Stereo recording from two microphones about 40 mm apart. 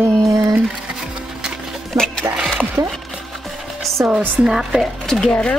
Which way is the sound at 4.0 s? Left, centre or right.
Centre.